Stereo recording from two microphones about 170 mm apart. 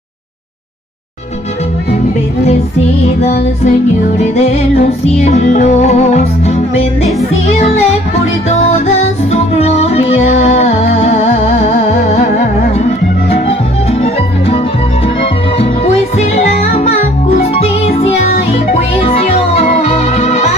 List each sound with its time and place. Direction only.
3.2 s music: 40° left (ahead or behind)
14.0 s music: 35° left (ahead or behind)